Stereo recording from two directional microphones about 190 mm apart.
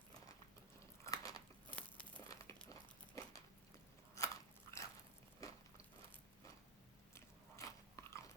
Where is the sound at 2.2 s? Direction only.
15° left (ahead or behind).